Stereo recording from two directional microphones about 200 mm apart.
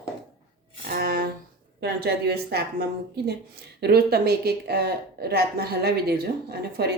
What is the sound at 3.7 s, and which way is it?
Speech, 55° right (ahead or behind).